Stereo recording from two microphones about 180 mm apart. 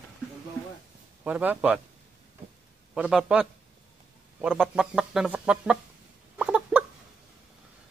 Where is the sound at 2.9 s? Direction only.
5° right (ahead or behind).